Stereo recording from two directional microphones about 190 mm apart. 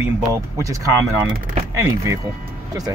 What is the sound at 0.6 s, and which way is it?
Speech, 15° right (ahead or behind).